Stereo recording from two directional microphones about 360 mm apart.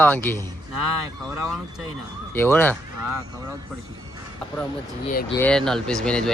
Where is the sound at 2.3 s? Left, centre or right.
Centre.